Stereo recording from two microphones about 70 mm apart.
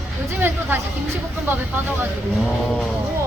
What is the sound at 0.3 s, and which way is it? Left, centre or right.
Speech, right.